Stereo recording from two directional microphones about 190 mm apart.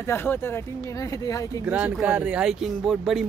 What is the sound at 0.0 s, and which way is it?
Speech, 15° left (ahead or behind).